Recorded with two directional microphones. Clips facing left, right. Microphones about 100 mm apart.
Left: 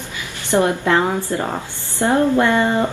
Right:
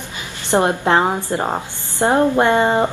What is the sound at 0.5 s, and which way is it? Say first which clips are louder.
A woman's voice: right 1 dB; 20° right (ahead or behind).